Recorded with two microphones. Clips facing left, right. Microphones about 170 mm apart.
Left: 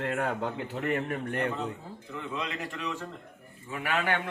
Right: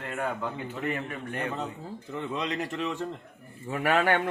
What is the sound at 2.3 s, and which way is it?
Speech, 25° right (ahead or behind).